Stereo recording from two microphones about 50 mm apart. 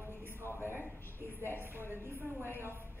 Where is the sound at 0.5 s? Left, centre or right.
Right.